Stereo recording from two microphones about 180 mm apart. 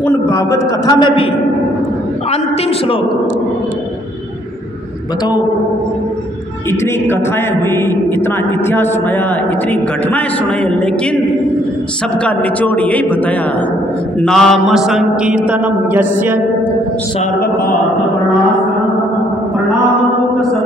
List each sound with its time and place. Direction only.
0.0 s a man's voice: 20° left (ahead or behind)
6.7 s a man's voice: 15° left (ahead or behind)
12.2 s a man's voice: 5° left (ahead or behind); by 16.3 s 10° right (ahead or behind)